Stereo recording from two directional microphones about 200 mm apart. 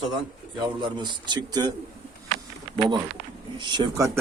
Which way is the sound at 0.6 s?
20° right (ahead or behind).